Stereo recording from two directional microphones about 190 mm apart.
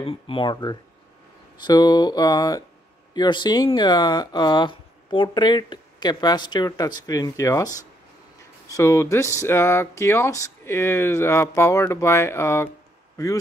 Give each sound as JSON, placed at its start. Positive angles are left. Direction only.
{"t": 0.0, "sound": "speech", "side_deg": 30}